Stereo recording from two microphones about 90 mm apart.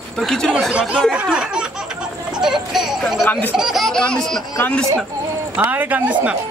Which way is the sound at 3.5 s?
Centre (ahead or behind).